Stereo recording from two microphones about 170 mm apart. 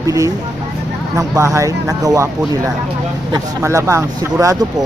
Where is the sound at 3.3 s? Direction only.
20° right (ahead or behind).